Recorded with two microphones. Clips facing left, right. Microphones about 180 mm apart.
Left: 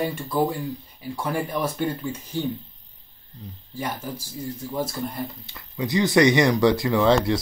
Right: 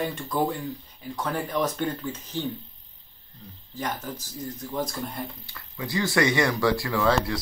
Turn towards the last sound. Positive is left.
turn(degrees=25)  # may be behind; listen again after turning